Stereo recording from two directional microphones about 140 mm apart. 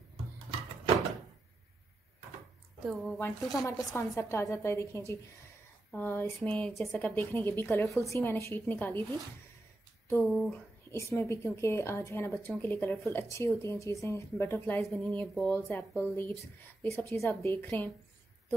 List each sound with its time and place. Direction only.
2.8 s speech: centre (ahead or behind)
3.2 s a woman's voice: 20° left (ahead or behind)
10.2 s speech: centre (ahead or behind)
10.5 s a woman's voice: 20° left (ahead or behind)
14.8 s a woman's voice: 5° left (ahead or behind)